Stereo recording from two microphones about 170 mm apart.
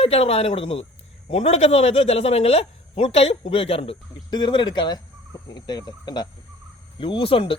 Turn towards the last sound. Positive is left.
turn(degrees=35)  # may be behind; listen again after turning